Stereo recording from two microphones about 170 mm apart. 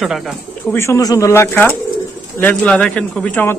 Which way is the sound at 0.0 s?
Centre (ahead or behind).